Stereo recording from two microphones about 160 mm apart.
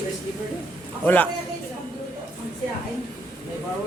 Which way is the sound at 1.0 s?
10° left (ahead or behind).